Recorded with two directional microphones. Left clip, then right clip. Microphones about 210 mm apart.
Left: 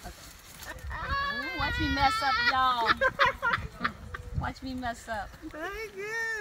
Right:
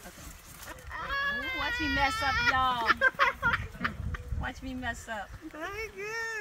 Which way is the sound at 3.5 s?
Centre (ahead or behind).